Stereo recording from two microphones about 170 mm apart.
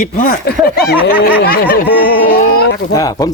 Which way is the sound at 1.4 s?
70° left (ahead or behind).